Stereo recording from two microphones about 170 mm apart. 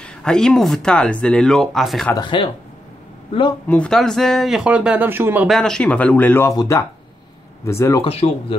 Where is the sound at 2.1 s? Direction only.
25° left (ahead or behind).